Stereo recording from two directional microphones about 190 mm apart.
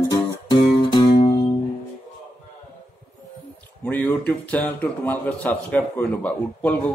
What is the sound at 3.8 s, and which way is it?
A man's voice, 10° left (ahead or behind).